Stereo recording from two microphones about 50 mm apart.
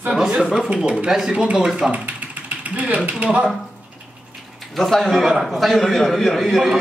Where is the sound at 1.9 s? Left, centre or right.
Right.